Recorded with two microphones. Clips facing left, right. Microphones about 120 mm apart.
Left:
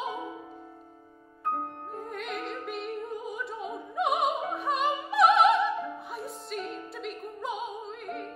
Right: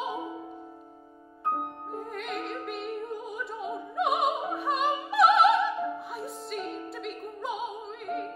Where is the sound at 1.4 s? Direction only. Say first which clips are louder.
Right 1 dB; 15° right (ahead or behind).